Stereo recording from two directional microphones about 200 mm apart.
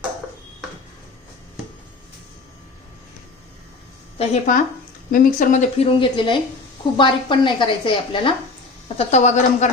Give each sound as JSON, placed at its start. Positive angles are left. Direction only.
{"t": 4.2, "sound": "a woman's voice", "side_deg": 40}